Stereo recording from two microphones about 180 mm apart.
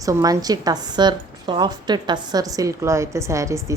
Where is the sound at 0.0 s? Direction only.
20° right (ahead or behind).